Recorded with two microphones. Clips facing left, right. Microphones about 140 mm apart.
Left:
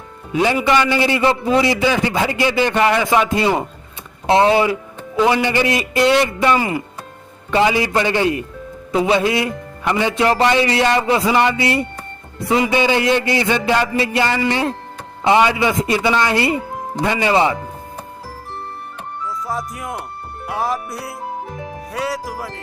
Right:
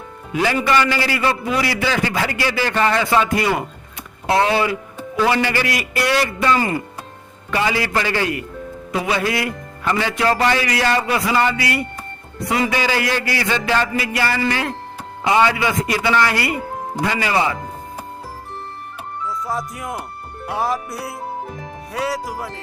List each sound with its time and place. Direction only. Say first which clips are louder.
0.3 s a man's voice: left 2 dB; 20° left (ahead or behind)
19.3 s speech: even; centre (ahead or behind)